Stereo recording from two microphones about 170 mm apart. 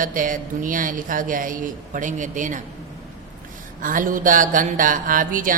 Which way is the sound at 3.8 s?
55° right (ahead or behind).